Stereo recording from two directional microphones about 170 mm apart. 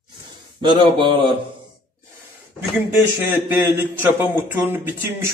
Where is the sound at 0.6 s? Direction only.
25° right (ahead or behind).